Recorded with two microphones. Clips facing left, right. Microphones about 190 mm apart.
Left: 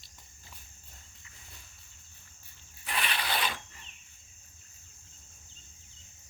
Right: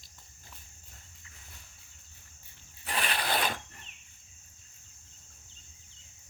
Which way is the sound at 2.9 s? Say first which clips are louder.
Right 2 dB; 40° right (ahead or behind).